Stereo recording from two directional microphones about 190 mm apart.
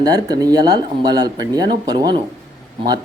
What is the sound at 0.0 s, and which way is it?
Speech, 20° right (ahead or behind).